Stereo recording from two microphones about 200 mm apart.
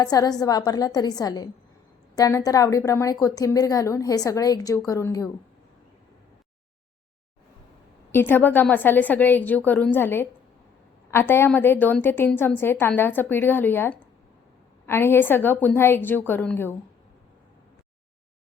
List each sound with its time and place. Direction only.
0.0 s a woman's voice: 20° left (ahead or behind)
8.1 s a woman's voice: 10° left (ahead or behind)